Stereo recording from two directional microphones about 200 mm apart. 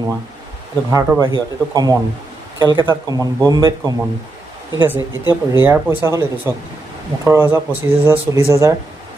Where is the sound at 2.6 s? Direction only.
20° right (ahead or behind).